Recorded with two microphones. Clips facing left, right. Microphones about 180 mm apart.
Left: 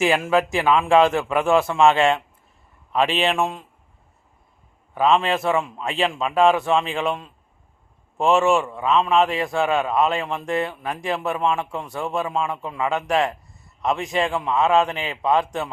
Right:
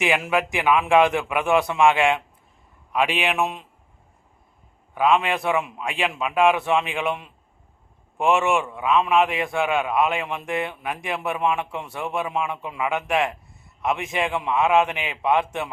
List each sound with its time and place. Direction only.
0.0 s a man's voice: 15° right (ahead or behind)
4.9 s a man's voice: 10° right (ahead or behind)
8.2 s a man's voice: 15° right (ahead or behind)